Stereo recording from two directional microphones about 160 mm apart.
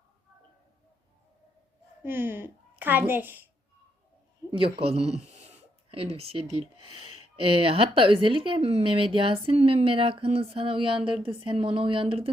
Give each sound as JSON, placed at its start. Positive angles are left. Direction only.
{"t": 2.0, "sound": "a child's voice", "side_deg": -15}
{"t": 4.5, "sound": "speech", "side_deg": -35}